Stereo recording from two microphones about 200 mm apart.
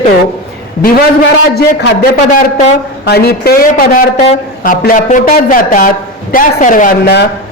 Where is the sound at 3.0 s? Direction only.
50° left (ahead or behind).